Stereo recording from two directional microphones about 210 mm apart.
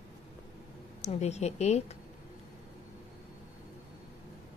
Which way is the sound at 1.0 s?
30° left (ahead or behind).